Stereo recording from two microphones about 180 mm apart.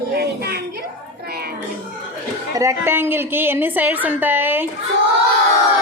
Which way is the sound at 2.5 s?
15° right (ahead or behind).